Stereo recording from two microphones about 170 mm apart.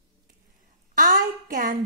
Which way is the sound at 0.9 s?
50° right (ahead or behind).